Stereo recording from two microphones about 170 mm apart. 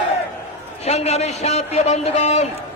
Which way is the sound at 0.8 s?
40° left (ahead or behind).